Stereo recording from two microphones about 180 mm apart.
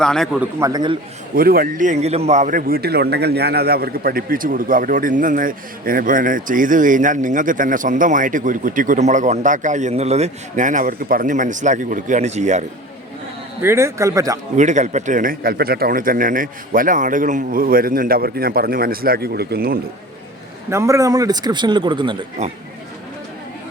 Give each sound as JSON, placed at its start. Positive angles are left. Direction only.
{"t": 0.0, "sound": "a man's voice", "side_deg": 5}
{"t": 0.3, "sound": "a man's voice", "side_deg": -20}
{"t": 1.4, "sound": "a man's voice", "side_deg": -55}
{"t": 13.6, "sound": "speech", "side_deg": -15}
{"t": 14.5, "sound": "a man's voice", "side_deg": -40}
{"t": 20.7, "sound": "a man's voice", "side_deg": -15}